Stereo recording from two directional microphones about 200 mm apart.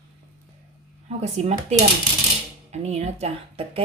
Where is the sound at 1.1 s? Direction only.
35° right (ahead or behind).